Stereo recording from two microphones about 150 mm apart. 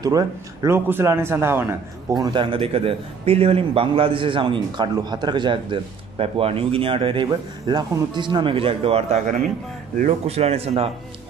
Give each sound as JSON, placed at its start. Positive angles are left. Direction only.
{"t": 0.0, "sound": "a man's voice", "side_deg": -25}
{"t": 2.3, "sound": "a man's voice", "side_deg": -35}